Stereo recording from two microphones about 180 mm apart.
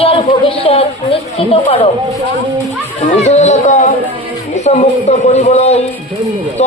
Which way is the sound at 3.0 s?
40° left (ahead or behind).